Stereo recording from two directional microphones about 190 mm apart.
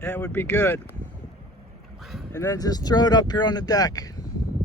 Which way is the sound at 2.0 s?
Centre (ahead or behind).